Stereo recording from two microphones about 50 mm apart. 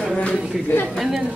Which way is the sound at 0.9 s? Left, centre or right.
Centre.